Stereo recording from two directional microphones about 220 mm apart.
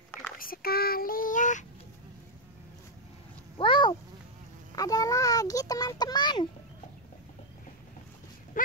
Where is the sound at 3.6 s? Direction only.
20° left (ahead or behind).